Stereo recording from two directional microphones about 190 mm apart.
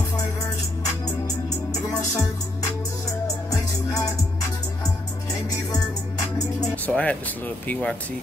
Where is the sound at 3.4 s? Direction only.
20° left (ahead or behind).